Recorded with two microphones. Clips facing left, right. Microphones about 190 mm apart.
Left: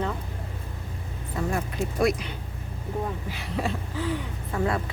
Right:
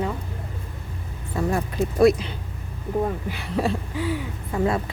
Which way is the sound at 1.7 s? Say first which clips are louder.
Right 8 dB; 30° right (ahead or behind).